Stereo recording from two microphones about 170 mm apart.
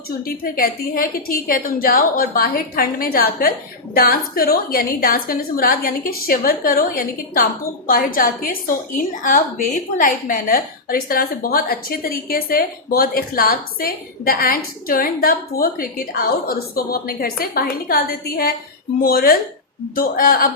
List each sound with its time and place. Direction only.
0.4 s a woman's voice: 60° left (ahead or behind)